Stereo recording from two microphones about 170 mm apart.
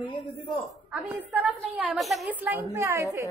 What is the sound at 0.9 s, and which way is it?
A woman's voice, 5° right (ahead or behind).